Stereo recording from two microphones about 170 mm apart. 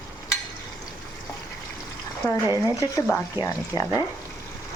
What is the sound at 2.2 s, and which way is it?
Speech, 15° left (ahead or behind).